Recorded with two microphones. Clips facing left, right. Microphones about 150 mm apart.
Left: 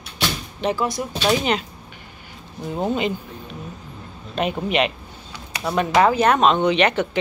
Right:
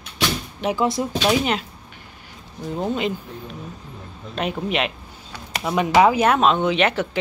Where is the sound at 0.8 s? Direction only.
25° right (ahead or behind).